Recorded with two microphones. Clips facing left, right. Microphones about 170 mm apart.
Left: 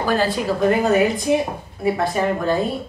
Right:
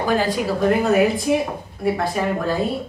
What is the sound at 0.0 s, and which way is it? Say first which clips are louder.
Speech: even; 15° right (ahead or behind).